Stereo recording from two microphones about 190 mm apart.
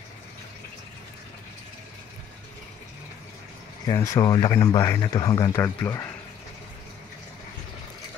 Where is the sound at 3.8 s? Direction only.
15° left (ahead or behind).